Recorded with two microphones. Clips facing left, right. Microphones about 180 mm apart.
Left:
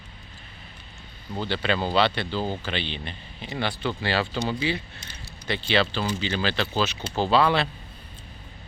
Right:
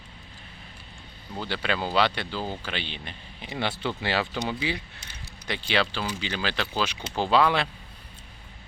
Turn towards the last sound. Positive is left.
turn(degrees=-10)  # may be behind; listen again after turning